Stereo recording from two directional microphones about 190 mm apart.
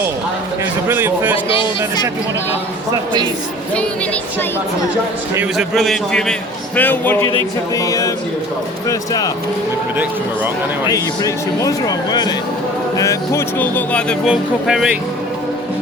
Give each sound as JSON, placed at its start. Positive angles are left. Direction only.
{"t": 0.9, "sound": "speech", "side_deg": -10}
{"t": 3.8, "sound": "music", "side_deg": 5}
{"t": 5.5, "sound": "speech", "side_deg": 0}
{"t": 6.7, "sound": "music", "side_deg": 10}
{"t": 8.9, "sound": "speech", "side_deg": 20}
{"t": 10.8, "sound": "speech", "side_deg": 20}